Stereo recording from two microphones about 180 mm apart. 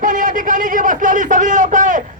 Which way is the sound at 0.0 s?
45° right (ahead or behind).